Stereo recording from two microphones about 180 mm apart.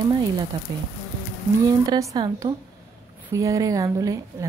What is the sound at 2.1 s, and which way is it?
Speech, 20° right (ahead or behind).